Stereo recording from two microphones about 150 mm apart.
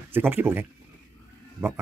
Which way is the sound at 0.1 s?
15° right (ahead or behind).